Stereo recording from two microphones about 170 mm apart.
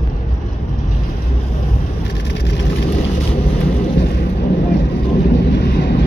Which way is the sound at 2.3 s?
90° left.